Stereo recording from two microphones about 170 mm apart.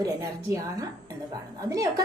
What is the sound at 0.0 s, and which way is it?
A woman's voice, 20° right (ahead or behind).